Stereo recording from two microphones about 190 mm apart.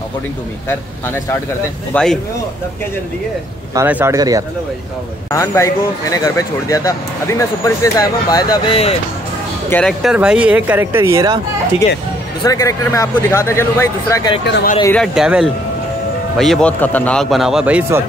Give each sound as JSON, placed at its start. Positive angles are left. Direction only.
{"t": 0.7, "sound": "speech", "side_deg": 15}
{"t": 3.7, "sound": "speech", "side_deg": -10}
{"t": 5.3, "sound": "speech", "side_deg": 15}
{"t": 9.7, "sound": "a man's voice", "side_deg": 5}
{"t": 10.1, "sound": "speech", "side_deg": -5}
{"t": 12.4, "sound": "speech", "side_deg": 15}
{"t": 14.4, "sound": "speech", "side_deg": 65}
{"t": 15.0, "sound": "a man's voice", "side_deg": -5}